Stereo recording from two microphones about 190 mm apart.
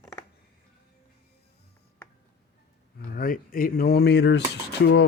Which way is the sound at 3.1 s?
50° left (ahead or behind).